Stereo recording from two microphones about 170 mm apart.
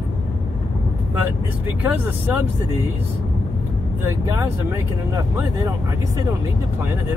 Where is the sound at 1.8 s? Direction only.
10° right (ahead or behind).